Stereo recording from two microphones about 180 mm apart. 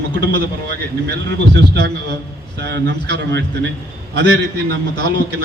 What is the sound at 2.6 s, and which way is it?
A man's voice, 70° right (ahead or behind).